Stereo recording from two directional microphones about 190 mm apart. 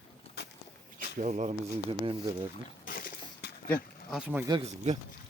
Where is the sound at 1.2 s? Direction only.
40° right (ahead or behind).